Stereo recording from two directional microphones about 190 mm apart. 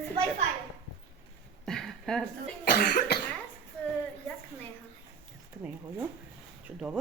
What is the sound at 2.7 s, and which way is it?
Cough, 50° left (ahead or behind).